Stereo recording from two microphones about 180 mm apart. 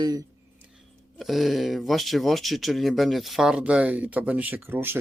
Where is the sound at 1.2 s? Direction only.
Centre (ahead or behind).